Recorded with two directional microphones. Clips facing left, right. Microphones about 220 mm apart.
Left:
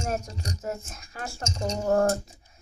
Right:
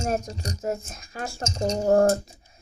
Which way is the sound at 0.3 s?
35° right (ahead or behind).